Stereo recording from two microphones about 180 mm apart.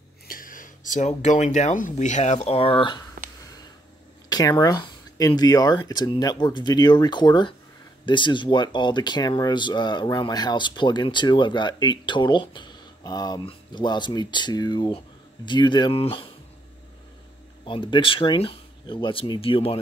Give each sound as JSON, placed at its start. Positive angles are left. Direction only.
{"t": 0.3, "sound": "speech", "side_deg": 50}
{"t": 4.3, "sound": "speech", "side_deg": 20}
{"t": 17.6, "sound": "speech", "side_deg": 25}